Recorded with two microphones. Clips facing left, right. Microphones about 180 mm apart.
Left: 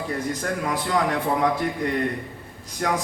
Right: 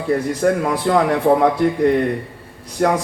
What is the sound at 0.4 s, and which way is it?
A man's voice, 60° right (ahead or behind).